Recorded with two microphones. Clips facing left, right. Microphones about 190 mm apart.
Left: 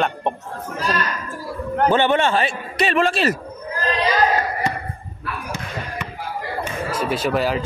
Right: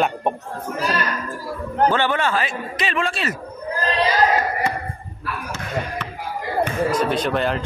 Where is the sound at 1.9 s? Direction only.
25° left (ahead or behind).